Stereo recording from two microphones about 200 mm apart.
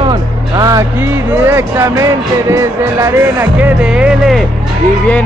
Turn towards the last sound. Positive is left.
turn(degrees=-5)  # may be behind; listen again after turning